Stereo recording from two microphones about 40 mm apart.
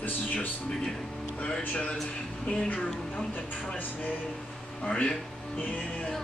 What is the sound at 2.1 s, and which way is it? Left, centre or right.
Speech, left.